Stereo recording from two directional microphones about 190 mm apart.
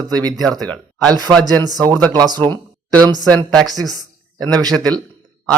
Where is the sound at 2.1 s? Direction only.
20° right (ahead or behind).